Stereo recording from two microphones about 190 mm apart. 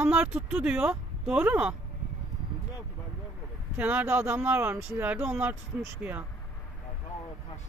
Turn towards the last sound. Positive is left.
turn(degrees=-10)  # may be behind; listen again after turning